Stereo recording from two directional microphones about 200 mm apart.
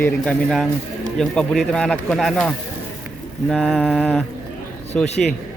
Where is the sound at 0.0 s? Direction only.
5° left (ahead or behind).